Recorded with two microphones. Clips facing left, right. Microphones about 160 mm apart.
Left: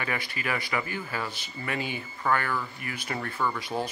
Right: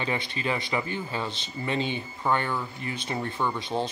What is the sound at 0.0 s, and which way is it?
Speech, 25° right (ahead or behind).